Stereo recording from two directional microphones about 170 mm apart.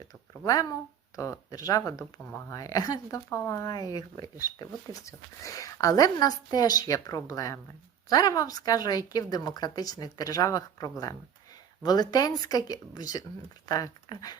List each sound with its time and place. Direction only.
0.4 s speech: 20° left (ahead or behind)